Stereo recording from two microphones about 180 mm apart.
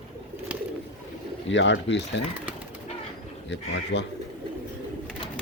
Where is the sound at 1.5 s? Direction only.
90° left.